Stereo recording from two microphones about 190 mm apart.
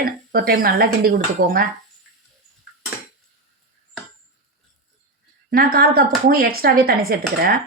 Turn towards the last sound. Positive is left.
turn(degrees=-55)  # may be behind; listen again after turning